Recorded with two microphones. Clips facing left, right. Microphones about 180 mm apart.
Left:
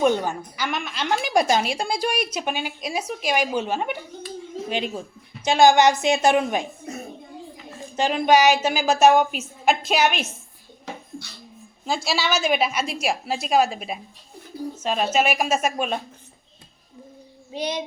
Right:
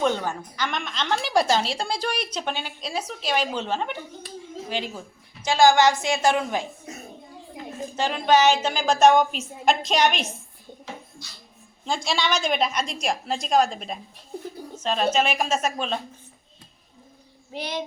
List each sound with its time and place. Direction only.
0.0 s a woman's voice: 15° left (ahead or behind)
7.9 s a woman's voice: 15° left (ahead or behind)
11.9 s a woman's voice: 5° left (ahead or behind)
17.5 s a woman's voice: 20° left (ahead or behind)